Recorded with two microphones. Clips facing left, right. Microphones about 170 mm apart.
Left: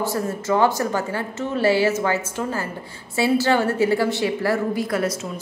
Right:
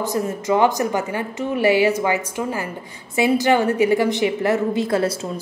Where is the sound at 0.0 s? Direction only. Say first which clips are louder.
Right 1 dB; 20° right (ahead or behind).